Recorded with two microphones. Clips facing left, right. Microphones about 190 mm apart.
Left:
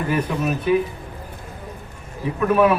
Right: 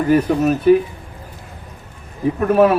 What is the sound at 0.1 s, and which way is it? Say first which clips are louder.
Speech: right 9 dB; 40° right (ahead or behind).